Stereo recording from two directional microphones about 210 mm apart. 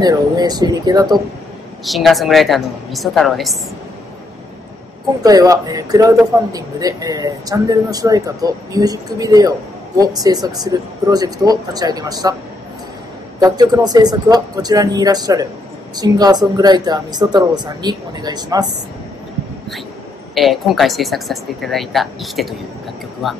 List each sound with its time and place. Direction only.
0.0 s speech: 20° right (ahead or behind)
1.9 s speech: centre (ahead or behind)
5.2 s a man's voice: 15° right (ahead or behind)
13.4 s a man's voice: 20° right (ahead or behind)
20.3 s speech: centre (ahead or behind)